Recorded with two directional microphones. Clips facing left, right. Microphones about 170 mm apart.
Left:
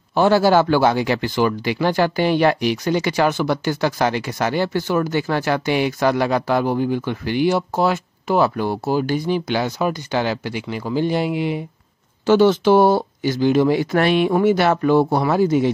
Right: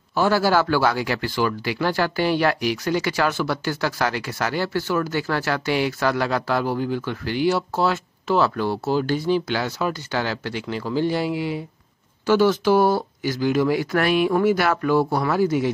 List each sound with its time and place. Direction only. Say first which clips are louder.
0.1 s speech: left 4 dB; 25° left (ahead or behind)